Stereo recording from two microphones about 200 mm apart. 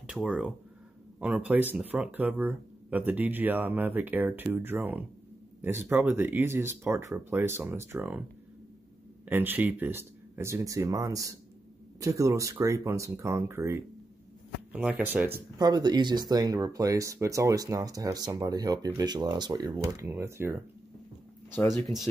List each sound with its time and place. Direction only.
0.0 s speech: 5° right (ahead or behind)
21.8 s speech: centre (ahead or behind)